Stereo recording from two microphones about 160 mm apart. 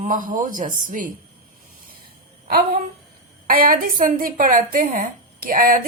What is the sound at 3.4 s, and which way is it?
A woman's voice, 65° right (ahead or behind).